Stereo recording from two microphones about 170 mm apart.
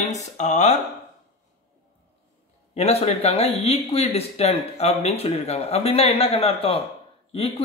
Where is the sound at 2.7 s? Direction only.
40° left (ahead or behind).